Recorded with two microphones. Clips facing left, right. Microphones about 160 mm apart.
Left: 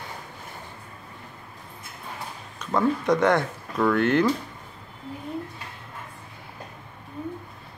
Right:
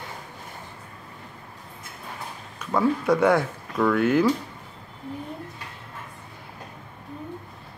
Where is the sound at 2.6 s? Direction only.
5° right (ahead or behind).